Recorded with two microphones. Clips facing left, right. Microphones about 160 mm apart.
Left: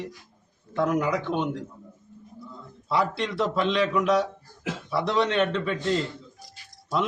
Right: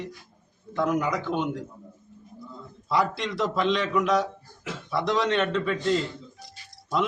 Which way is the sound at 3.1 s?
Centre (ahead or behind).